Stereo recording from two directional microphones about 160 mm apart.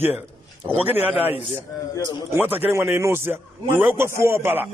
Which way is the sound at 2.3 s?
10° right (ahead or behind).